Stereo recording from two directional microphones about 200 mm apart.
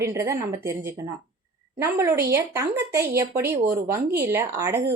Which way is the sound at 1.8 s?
15° right (ahead or behind).